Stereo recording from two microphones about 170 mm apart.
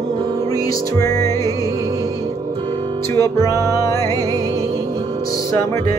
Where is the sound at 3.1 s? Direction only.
20° left (ahead or behind).